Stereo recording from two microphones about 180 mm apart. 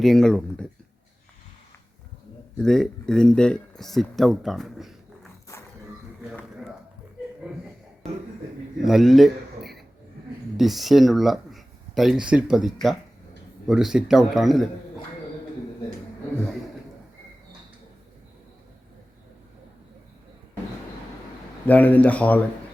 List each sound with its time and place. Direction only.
0.0 s speech: centre (ahead or behind)
2.6 s speech: 5° left (ahead or behind)
8.8 s speech: centre (ahead or behind)
21.7 s speech: 10° left (ahead or behind)